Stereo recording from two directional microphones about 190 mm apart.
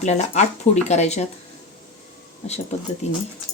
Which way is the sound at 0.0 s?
35° left (ahead or behind).